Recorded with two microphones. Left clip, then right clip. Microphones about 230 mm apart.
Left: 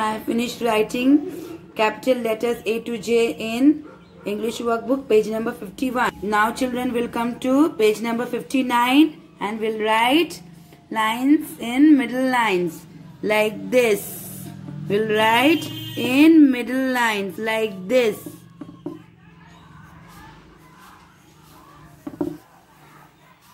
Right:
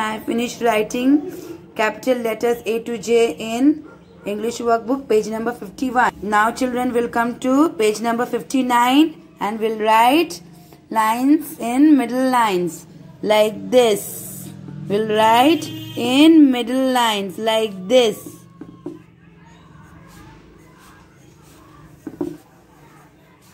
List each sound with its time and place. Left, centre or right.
0.0 s a woman's voice: centre